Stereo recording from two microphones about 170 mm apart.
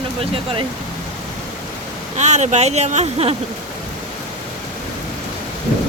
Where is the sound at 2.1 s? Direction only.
45° right (ahead or behind).